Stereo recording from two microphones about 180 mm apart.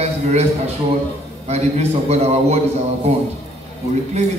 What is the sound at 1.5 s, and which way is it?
A man's voice, 35° right (ahead or behind).